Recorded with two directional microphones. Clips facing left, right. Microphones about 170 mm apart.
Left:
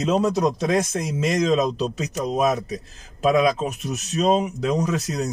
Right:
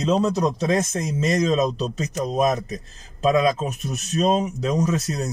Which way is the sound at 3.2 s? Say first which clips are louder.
Even; 10° left (ahead or behind).